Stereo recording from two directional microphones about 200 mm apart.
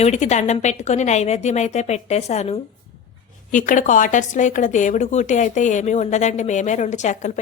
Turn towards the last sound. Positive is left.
turn(degrees=35)  # may be behind; listen again after turning